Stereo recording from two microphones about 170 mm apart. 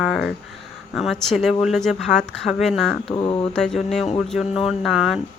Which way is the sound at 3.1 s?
25° left (ahead or behind).